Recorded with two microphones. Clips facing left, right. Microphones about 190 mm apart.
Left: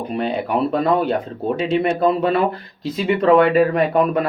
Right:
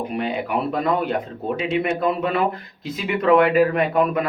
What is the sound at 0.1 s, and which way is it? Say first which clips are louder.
Speech: left 3 dB; 35° left (ahead or behind).